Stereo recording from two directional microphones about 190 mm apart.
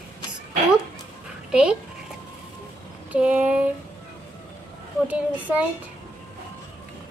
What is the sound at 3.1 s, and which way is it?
Speech, 5° right (ahead or behind).